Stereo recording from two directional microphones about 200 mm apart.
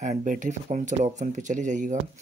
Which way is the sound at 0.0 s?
40° right (ahead or behind).